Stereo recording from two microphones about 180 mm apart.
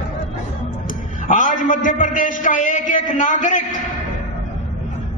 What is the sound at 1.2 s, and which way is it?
A man's voice, 45° left (ahead or behind).